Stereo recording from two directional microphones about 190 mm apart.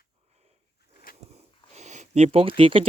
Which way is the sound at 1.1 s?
50° left (ahead or behind).